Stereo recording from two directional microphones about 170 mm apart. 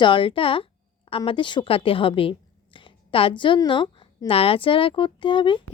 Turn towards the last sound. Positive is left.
turn(degrees=30)  # may be behind; listen again after turning